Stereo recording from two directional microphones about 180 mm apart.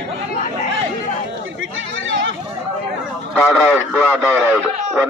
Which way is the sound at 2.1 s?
90° right.